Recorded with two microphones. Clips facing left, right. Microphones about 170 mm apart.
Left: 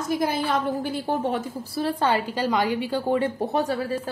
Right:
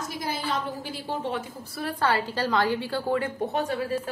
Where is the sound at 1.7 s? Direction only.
25° left (ahead or behind).